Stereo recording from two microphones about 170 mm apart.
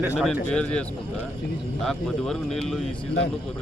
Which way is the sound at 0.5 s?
5° left (ahead or behind).